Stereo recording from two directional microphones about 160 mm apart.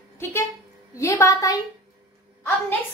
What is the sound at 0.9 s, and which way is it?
Speech, 20° left (ahead or behind).